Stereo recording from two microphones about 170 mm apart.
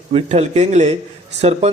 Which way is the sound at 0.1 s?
40° right (ahead or behind).